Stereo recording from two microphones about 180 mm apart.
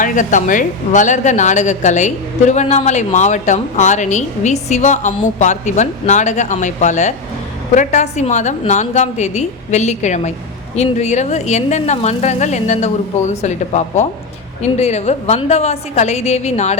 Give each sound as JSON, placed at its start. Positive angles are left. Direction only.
{"t": 0.0, "sound": "a woman's voice", "side_deg": 45}